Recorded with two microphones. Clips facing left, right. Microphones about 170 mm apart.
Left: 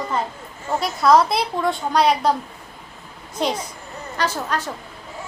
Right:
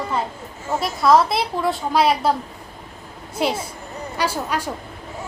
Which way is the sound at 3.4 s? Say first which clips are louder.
Right 1 dB; 5° right (ahead or behind).